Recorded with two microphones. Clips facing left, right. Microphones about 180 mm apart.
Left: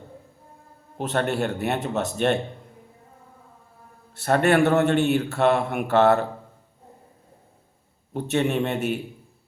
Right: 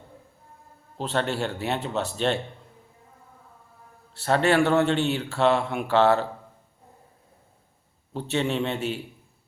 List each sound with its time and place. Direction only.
1.1 s speech: 50° left (ahead or behind)
4.3 s a man's voice: 50° left (ahead or behind)
8.1 s speech: 55° left (ahead or behind)